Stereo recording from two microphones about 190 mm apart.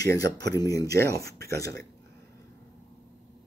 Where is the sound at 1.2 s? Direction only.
55° right (ahead or behind).